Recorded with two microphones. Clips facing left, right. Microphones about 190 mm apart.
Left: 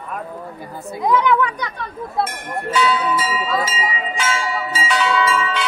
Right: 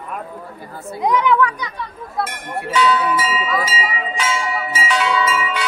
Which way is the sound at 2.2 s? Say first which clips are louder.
Left 2 dB; 25° left (ahead or behind).